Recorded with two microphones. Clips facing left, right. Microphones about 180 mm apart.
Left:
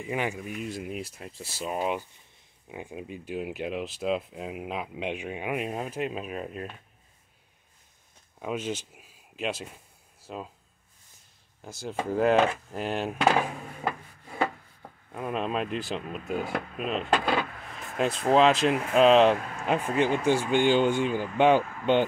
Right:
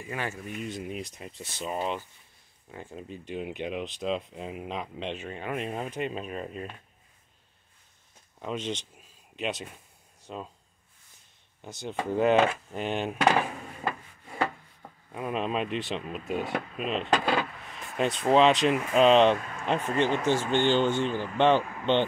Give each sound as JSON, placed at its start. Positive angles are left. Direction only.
{"t": 0.0, "sound": "speech", "side_deg": 15}
{"t": 0.5, "sound": "speech", "side_deg": 5}
{"t": 8.4, "sound": "speech", "side_deg": 10}
{"t": 11.6, "sound": "speech", "side_deg": 0}
{"t": 15.1, "sound": "speech", "side_deg": 0}